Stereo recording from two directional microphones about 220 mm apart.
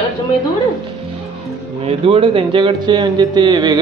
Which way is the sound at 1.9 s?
25° right (ahead or behind).